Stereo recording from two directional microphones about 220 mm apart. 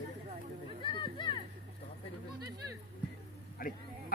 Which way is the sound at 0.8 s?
20° left (ahead or behind).